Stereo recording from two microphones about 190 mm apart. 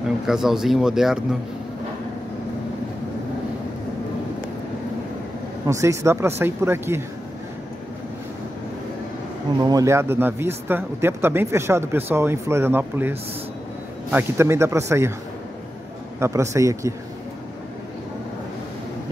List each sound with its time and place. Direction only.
0.3 s speech: centre (ahead or behind)
5.7 s speech: 15° right (ahead or behind)
9.6 s speech: 20° right (ahead or behind)
16.2 s speech: 15° right (ahead or behind)